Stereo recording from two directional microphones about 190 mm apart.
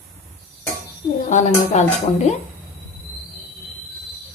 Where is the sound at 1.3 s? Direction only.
35° left (ahead or behind).